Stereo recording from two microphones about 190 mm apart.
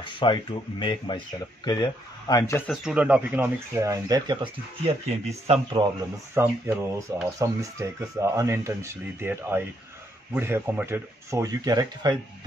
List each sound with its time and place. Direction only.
0.0 s speech: 25° left (ahead or behind)
2.7 s a man's voice: 5° right (ahead or behind); by 5.9 s 25° right (ahead or behind)
6.3 s speech: 10° right (ahead or behind)